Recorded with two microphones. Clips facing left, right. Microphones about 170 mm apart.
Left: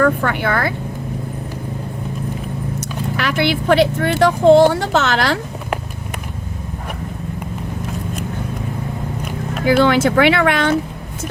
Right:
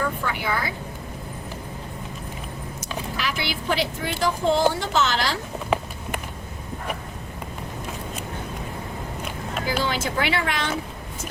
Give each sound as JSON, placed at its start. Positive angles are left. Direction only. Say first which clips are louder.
{"t": 0.0, "sound": "speech", "louder": "left 10 dB", "side_deg": 65}
{"t": 3.2, "sound": "speech", "louder": "left 12 dB", "side_deg": 65}
{"t": 9.6, "sound": "speech", "louder": "left 13 dB", "side_deg": 70}